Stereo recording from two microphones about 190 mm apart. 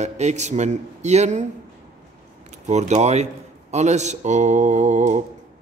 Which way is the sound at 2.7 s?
35° right (ahead or behind).